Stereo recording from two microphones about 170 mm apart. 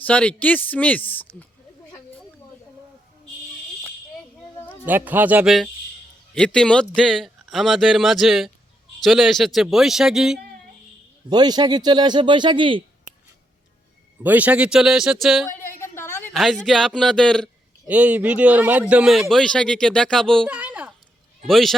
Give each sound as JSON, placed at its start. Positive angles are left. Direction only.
{"t": 0.0, "sound": "a man's voice", "side_deg": 5}
{"t": 4.5, "sound": "a sound", "side_deg": 10}
{"t": 4.9, "sound": "speech", "side_deg": -10}
{"t": 11.3, "sound": "a man's voice", "side_deg": -25}
{"t": 14.3, "sound": "speech", "side_deg": -10}
{"t": 15.5, "sound": "a sound", "side_deg": 15}
{"t": 16.3, "sound": "speech", "side_deg": 0}
{"t": 17.8, "sound": "speech", "side_deg": -10}
{"t": 20.5, "sound": "a sound", "side_deg": -10}
{"t": 21.4, "sound": "speech", "side_deg": 0}